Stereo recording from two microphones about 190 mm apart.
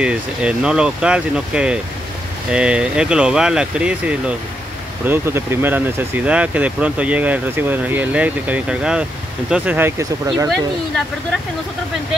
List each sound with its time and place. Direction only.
0.0 s speech: 5° right (ahead or behind)